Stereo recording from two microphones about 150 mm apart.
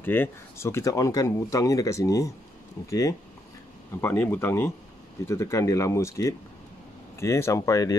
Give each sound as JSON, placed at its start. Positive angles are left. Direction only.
{"t": 0.0, "sound": "speech", "side_deg": 15}